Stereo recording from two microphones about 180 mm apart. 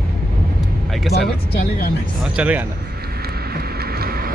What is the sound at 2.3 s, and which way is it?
Speech, 10° right (ahead or behind).